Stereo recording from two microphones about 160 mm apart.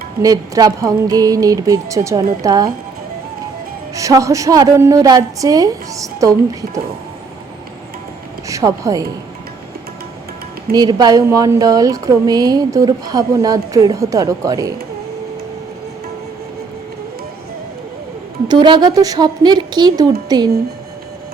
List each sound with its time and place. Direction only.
0.2 s a woman's voice: 20° right (ahead or behind)
3.9 s a woman's voice: 20° right (ahead or behind)
8.4 s a woman's voice: 20° right (ahead or behind)
10.7 s a woman's voice: 25° right (ahead or behind)
18.4 s a woman's voice: 30° right (ahead or behind)